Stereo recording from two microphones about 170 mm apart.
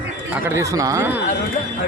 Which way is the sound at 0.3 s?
15° right (ahead or behind).